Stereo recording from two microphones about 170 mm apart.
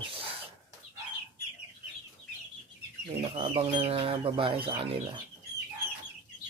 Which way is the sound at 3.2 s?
35° right (ahead or behind).